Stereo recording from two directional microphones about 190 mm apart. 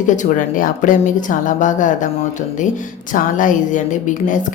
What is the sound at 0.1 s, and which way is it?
Speech, 40° left (ahead or behind).